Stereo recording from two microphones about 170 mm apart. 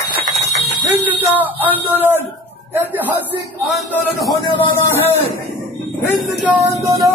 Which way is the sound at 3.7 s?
5° left (ahead or behind).